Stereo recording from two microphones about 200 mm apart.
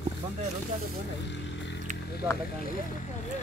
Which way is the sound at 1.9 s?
40° right (ahead or behind).